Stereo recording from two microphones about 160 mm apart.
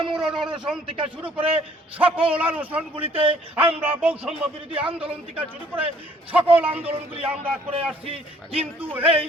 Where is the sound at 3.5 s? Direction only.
10° right (ahead or behind).